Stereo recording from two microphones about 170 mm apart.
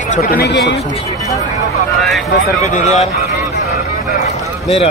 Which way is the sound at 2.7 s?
40° left (ahead or behind).